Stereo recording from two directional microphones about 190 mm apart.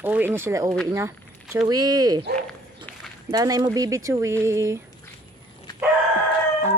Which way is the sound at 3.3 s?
20° right (ahead or behind).